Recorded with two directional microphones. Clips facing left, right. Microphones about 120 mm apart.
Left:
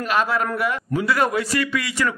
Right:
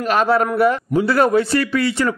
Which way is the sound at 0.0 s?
35° right (ahead or behind).